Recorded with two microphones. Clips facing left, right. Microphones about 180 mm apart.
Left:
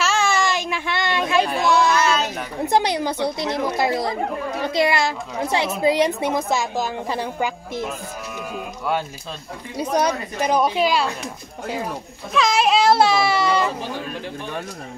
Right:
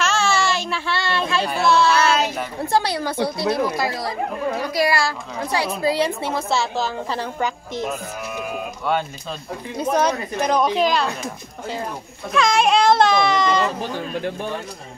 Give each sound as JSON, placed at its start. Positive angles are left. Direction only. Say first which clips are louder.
{"t": 0.0, "sound": "baby cry", "louder": "even", "side_deg": 10}
{"t": 1.6, "sound": "a woman's voice", "louder": "right 5 dB", "side_deg": 15}
{"t": 9.8, "sound": "a woman's voice", "louder": "right 1 dB", "side_deg": 10}
{"t": 12.3, "sound": "a child's voice", "louder": "right 1 dB", "side_deg": 0}